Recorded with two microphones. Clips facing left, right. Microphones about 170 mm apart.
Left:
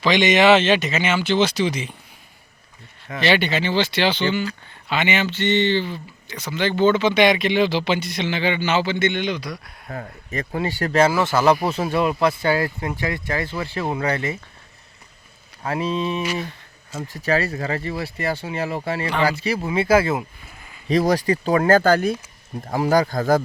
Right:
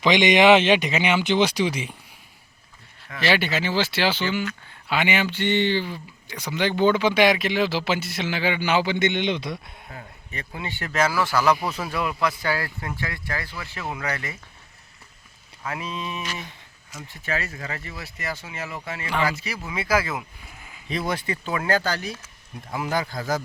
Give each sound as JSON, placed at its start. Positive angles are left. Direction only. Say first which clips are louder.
{"t": 0.0, "sound": "speech", "louder": "left 1 dB", "side_deg": -15}
{"t": 3.2, "sound": "speech", "louder": "left 3 dB", "side_deg": -5}
{"t": 9.9, "sound": "speech", "louder": "left 9 dB", "side_deg": 50}
{"t": 15.6, "sound": "speech", "louder": "left 8 dB", "side_deg": 30}
{"t": 17.0, "sound": "speech", "louder": "left 8 dB", "side_deg": 40}
{"t": 20.8, "sound": "speech", "louder": "left 9 dB", "side_deg": 40}
{"t": 22.6, "sound": "speech", "louder": "left 8 dB", "side_deg": 40}